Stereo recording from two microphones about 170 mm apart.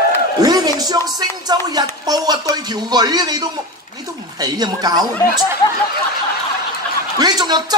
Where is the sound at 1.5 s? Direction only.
25° right (ahead or behind).